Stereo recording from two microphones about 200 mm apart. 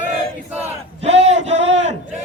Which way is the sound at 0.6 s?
35° right (ahead or behind).